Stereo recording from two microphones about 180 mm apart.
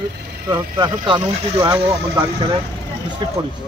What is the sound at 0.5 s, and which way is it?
A man's voice, 25° right (ahead or behind).